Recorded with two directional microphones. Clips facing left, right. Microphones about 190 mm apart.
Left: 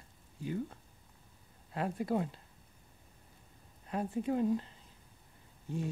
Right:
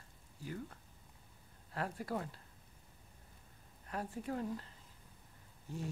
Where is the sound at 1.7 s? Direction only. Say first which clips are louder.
Left 6 dB; 20° left (ahead or behind).